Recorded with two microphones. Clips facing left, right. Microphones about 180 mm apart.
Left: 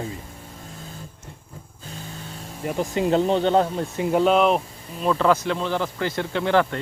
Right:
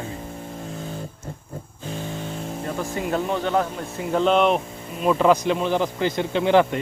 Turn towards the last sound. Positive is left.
turn(degrees=-15)  # may be behind; listen again after turning